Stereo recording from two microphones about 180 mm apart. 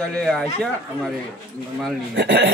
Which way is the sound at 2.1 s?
80° right.